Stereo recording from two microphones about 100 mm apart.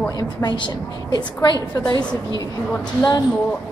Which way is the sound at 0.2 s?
45° left (ahead or behind).